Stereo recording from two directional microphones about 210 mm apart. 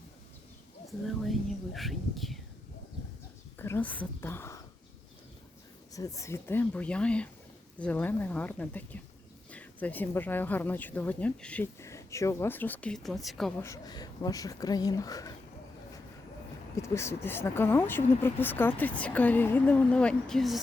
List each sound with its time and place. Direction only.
0.9 s speech: centre (ahead or behind)
3.6 s speech: 10° left (ahead or behind)
5.9 s speech: 15° left (ahead or behind); by 13.5 s centre (ahead or behind)
13.6 s speech: 15° left (ahead or behind)
16.7 s speech: 15° left (ahead or behind)